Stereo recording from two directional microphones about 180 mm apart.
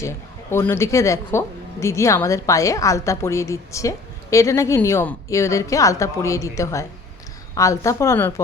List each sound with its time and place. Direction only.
0.0 s speech: 15° left (ahead or behind)